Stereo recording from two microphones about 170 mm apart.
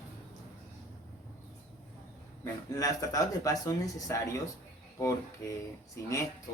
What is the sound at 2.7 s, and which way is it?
Speech, 20° left (ahead or behind).